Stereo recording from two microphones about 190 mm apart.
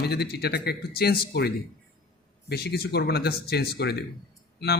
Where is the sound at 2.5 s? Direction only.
55° left (ahead or behind).